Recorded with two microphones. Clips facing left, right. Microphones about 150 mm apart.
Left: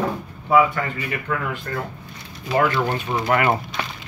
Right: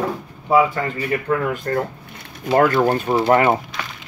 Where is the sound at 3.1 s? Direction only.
30° right (ahead or behind).